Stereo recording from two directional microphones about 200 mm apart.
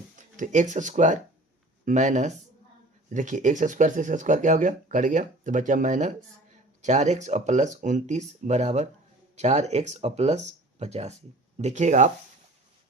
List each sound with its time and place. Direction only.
0.2 s speech: 40° right (ahead or behind)